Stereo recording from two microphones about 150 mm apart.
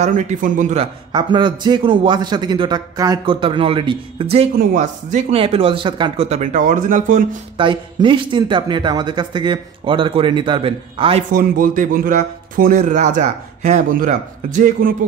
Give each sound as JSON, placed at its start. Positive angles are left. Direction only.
{"t": 0.0, "sound": "speech", "side_deg": -55}
{"t": 0.7, "sound": "a man's voice", "side_deg": -30}
{"t": 4.6, "sound": "speech", "side_deg": -60}
{"t": 5.3, "sound": "a man's voice", "side_deg": -40}
{"t": 6.2, "sound": "speech", "side_deg": -50}
{"t": 7.5, "sound": "a man's voice", "side_deg": -35}
{"t": 11.3, "sound": "speech", "side_deg": -70}